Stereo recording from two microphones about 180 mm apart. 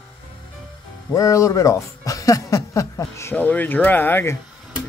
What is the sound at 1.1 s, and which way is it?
Speech, 15° left (ahead or behind).